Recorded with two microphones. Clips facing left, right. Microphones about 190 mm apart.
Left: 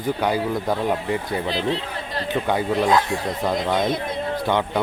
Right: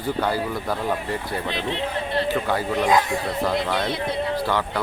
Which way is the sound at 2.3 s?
20° left (ahead or behind).